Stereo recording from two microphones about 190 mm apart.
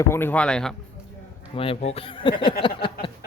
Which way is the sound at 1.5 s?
30° left (ahead or behind).